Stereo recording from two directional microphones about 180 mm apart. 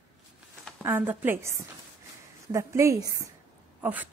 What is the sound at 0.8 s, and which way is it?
Speech, 10° right (ahead or behind).